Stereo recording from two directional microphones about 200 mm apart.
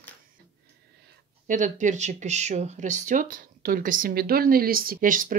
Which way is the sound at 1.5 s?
40° right (ahead or behind).